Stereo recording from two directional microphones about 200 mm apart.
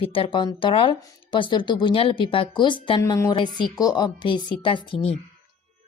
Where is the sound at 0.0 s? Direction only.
25° left (ahead or behind).